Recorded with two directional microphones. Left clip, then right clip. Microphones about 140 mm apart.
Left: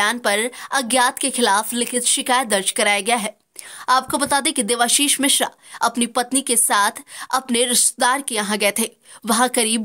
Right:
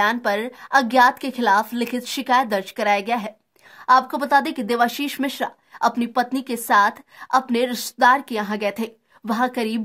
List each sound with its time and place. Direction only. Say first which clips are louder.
0.0 s a woman's voice: left 1 dB; 20° left (ahead or behind)